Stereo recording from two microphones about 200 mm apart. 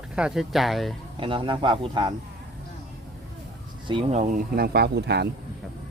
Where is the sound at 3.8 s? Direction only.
30° right (ahead or behind).